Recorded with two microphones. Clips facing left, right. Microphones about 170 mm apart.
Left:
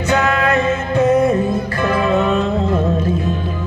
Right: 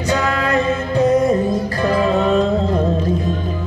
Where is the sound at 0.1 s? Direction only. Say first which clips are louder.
Left 2 dB; 35° right (ahead or behind).